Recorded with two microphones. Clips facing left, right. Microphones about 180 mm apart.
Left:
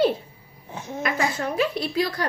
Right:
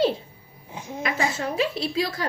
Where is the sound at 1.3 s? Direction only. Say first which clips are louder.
Left 1 dB; 25° right (ahead or behind).